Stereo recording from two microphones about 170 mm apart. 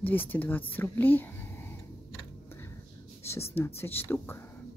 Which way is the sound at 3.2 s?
15° left (ahead or behind).